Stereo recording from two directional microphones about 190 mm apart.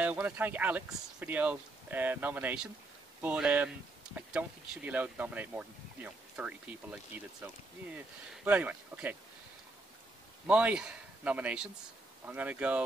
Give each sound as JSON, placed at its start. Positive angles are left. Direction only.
{"t": 0.0, "sound": "speech", "side_deg": -10}
{"t": 10.4, "sound": "speech", "side_deg": -5}